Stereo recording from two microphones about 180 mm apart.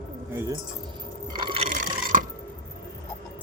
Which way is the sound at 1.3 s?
30° right (ahead or behind).